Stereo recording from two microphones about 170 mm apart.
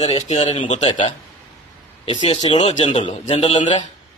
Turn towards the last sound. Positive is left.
turn(degrees=30)  # may be behind; listen again after turning